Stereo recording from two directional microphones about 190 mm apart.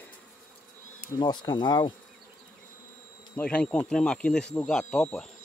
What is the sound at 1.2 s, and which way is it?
Speech, 25° left (ahead or behind).